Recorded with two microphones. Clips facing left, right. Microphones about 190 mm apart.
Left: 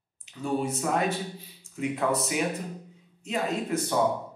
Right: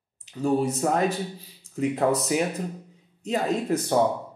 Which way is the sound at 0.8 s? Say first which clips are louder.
Right 3 dB; 40° right (ahead or behind).